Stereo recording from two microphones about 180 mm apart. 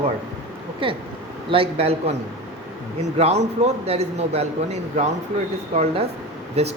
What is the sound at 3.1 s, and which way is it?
A man's voice, 35° right (ahead or behind).